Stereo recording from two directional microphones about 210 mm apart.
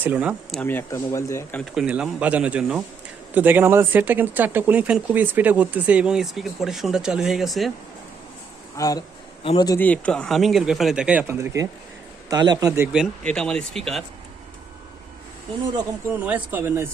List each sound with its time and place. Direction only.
0.0 s speech: 10° right (ahead or behind)
0.6 s speech: 10° left (ahead or behind)
1.7 s speech: 5° right (ahead or behind)
8.7 s speech: 15° left (ahead or behind)
9.7 s speech: 10° left (ahead or behind)
16.0 s speech: 10° right (ahead or behind)